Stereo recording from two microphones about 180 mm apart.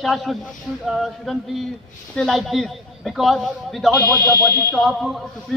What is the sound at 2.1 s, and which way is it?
A man's voice, centre (ahead or behind).